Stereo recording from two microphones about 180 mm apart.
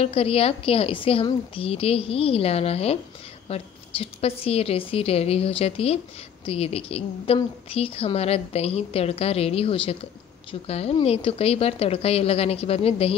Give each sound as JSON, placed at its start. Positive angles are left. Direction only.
{"t": 0.0, "sound": "a woman's voice", "side_deg": 30}